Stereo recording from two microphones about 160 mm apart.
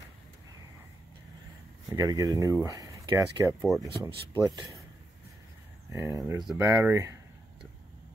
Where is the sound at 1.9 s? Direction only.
25° right (ahead or behind).